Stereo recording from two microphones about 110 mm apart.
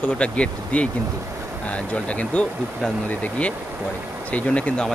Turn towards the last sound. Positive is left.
turn(degrees=10)  # may be behind; listen again after turning